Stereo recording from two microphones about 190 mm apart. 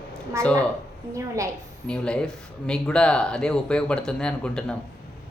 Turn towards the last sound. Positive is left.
turn(degrees=5)  # may be behind; listen again after turning